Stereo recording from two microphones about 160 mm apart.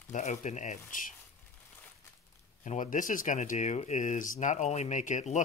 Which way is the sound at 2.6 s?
55° left (ahead or behind).